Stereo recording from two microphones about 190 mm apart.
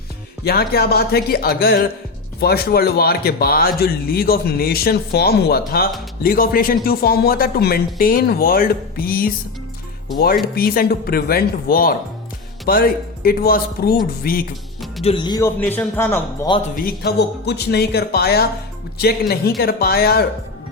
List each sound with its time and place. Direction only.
0.4 s speech: 55° left (ahead or behind)
10.5 s speech: 50° left (ahead or behind)
15.0 s speech: 25° left (ahead or behind); by 16.5 s 10° left (ahead or behind)
16.7 s speech: 55° left (ahead or behind)